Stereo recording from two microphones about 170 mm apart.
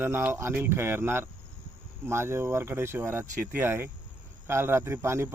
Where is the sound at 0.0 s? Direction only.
10° right (ahead or behind).